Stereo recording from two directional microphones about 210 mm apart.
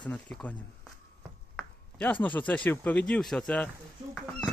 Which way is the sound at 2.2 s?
5° left (ahead or behind).